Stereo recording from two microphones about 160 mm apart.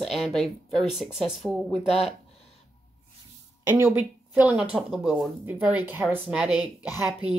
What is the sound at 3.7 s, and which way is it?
Speech, 15° right (ahead or behind).